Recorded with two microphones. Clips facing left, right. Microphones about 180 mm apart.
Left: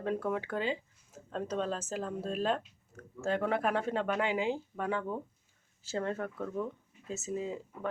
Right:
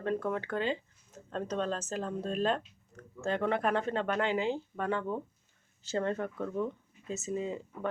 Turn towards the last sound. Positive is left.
turn(degrees=5)  # may be behind; listen again after turning